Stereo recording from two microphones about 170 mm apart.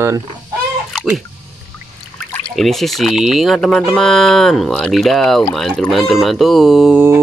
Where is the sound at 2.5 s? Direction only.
Centre (ahead or behind).